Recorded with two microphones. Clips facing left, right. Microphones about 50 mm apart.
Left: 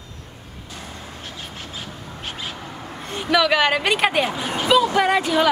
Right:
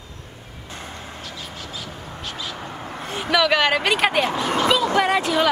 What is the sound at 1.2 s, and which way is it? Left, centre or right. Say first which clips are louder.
Vehicle: even; left.